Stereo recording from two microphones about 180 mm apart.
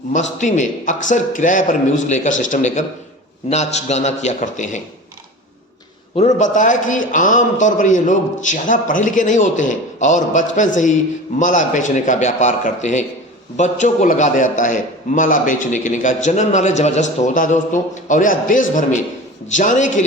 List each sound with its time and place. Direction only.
0.1 s a man's voice: 45° left (ahead or behind)
6.1 s a man's voice: 40° left (ahead or behind)